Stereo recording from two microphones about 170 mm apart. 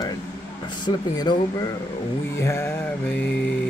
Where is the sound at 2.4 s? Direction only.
15° left (ahead or behind).